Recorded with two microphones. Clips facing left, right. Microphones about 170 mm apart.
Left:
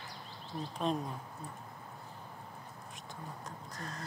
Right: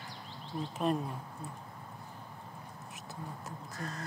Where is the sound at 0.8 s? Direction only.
5° right (ahead or behind).